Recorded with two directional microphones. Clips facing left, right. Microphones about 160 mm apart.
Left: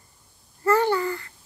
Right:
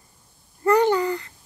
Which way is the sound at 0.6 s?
20° right (ahead or behind).